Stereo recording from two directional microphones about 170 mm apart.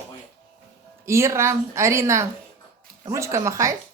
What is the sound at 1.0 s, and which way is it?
Speech, 15° right (ahead or behind).